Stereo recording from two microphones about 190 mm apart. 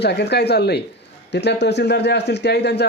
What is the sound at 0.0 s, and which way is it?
Speech, 60° left (ahead or behind).